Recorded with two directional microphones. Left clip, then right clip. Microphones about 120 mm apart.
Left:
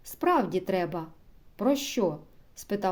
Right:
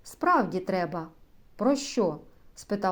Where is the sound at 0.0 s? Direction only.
15° left (ahead or behind).